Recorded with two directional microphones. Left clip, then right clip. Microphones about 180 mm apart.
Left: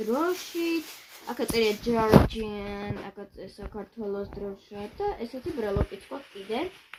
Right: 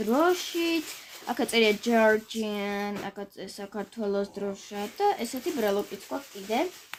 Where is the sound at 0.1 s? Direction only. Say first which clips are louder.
Right 5 dB; 35° right (ahead or behind).